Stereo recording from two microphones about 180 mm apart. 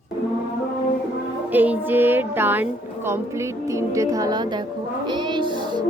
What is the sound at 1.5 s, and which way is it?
Speech, 10° right (ahead or behind).